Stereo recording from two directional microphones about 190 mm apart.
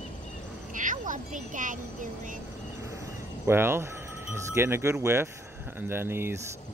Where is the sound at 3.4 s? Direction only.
10° right (ahead or behind).